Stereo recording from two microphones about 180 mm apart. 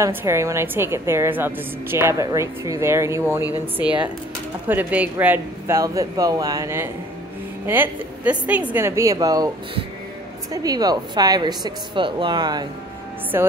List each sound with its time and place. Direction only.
0.0 s a woman's voice: 15° right (ahead or behind)
4.6 s a woman's voice: 10° right (ahead or behind)